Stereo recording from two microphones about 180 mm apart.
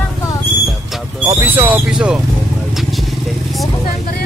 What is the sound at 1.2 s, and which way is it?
Owl, 10° right (ahead or behind).